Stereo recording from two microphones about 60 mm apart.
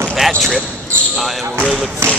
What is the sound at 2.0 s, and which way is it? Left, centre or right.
Speech, right.